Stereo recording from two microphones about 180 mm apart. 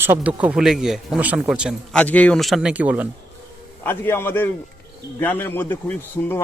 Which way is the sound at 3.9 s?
10° left (ahead or behind).